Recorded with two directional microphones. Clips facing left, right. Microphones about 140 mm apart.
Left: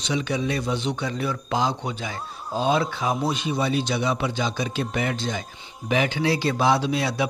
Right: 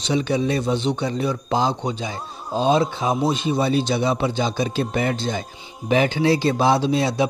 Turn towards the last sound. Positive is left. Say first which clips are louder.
# right 4 dB
turn(degrees=-30)  # may be behind; listen again after turning